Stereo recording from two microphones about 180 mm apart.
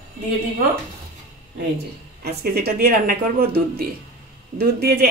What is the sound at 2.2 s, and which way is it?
Speech, 60° right (ahead or behind).